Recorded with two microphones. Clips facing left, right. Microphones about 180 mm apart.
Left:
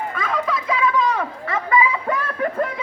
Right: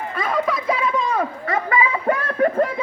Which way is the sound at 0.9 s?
30° right (ahead or behind).